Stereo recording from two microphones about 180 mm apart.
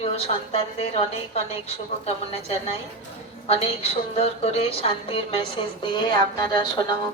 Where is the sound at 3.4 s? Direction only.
35° left (ahead or behind).